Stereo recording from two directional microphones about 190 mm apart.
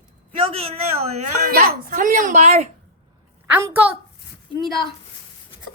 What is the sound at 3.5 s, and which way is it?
Speech, 15° right (ahead or behind).